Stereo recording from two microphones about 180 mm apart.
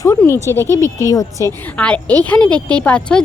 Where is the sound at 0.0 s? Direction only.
15° left (ahead or behind).